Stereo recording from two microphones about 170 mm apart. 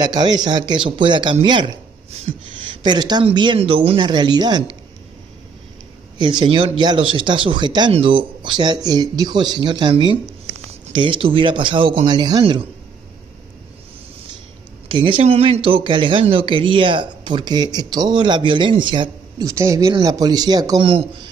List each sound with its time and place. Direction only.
0.0 s speech: 25° right (ahead or behind)
6.1 s speech: 25° right (ahead or behind)
14.9 s speech: 30° right (ahead or behind)